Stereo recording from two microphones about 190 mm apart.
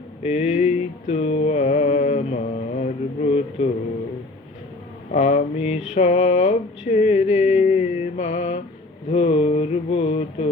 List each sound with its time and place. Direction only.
0.2 s mantra: 35° left (ahead or behind)
5.1 s mantra: 35° left (ahead or behind)
9.1 s a sound: 35° left (ahead or behind)